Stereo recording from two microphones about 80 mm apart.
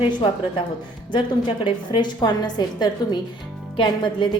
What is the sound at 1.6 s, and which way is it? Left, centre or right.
A woman's voice, left.